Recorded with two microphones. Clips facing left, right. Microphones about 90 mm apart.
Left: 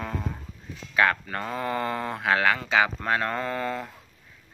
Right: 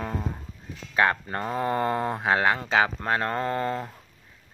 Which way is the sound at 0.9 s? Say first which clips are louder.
Even; 25° right (ahead or behind).